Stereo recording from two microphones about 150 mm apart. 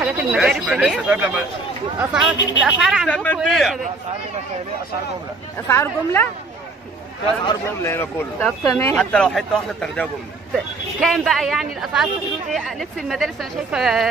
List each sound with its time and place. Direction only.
0.0 s a man's voice: 5° right (ahead or behind)
3.1 s a man's voice: 10° left (ahead or behind)
5.7 s speech: 15° left (ahead or behind)
7.8 s speech: 15° left (ahead or behind)
8.9 s a man's voice: 5° left (ahead or behind)